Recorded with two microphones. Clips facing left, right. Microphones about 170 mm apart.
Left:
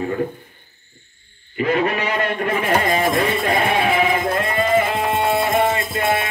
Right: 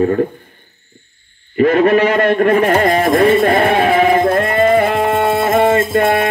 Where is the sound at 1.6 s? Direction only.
50° right (ahead or behind).